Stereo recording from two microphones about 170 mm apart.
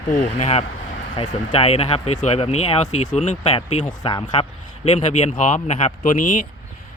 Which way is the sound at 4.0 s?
25° left (ahead or behind).